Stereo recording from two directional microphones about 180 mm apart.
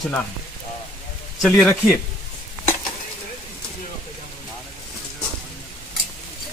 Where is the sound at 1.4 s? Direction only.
Centre (ahead or behind).